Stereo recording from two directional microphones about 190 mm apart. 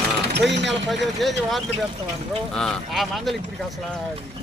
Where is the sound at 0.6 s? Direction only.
Centre (ahead or behind).